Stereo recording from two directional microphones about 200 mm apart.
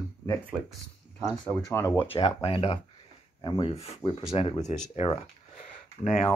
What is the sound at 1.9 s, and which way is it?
Speech, 25° left (ahead or behind).